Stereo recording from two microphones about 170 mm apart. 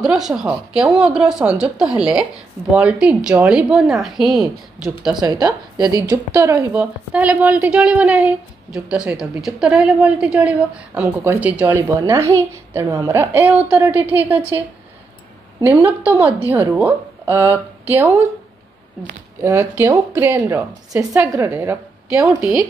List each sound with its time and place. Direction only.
0.0 s a woman's voice: 5° right (ahead or behind)
5.1 s a woman's voice: 25° right (ahead or behind)
12.0 s a woman's voice: 20° right (ahead or behind)
15.8 s a woman's voice: 10° right (ahead or behind)
19.4 s a woman's voice: 15° right (ahead or behind)